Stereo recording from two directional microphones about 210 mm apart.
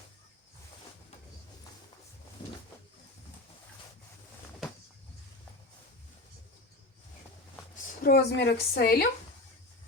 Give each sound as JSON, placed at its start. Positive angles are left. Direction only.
{"t": 8.0, "sound": "a woman's voice", "side_deg": 50}